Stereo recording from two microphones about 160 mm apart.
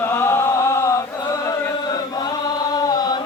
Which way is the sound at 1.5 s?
25° left (ahead or behind).